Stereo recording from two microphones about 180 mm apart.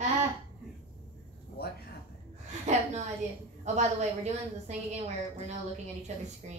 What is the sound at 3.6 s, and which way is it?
A woman's voice, 40° right (ahead or behind).